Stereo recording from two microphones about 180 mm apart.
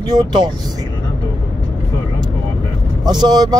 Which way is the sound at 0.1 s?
25° right (ahead or behind).